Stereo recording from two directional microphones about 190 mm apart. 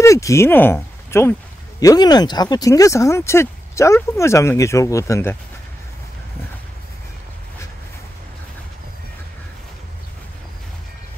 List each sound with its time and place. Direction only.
0.0 s speech: 15° left (ahead or behind)